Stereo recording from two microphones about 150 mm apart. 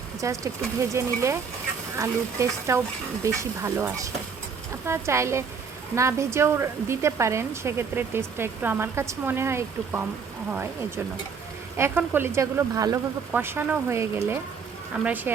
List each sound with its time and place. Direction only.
0.2 s speech: 20° right (ahead or behind)